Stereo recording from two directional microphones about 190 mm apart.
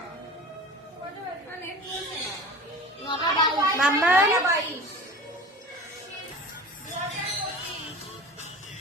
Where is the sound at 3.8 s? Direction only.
10° right (ahead or behind).